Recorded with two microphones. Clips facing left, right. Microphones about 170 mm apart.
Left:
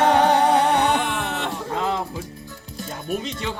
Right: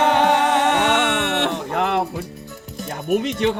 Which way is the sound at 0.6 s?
80° right.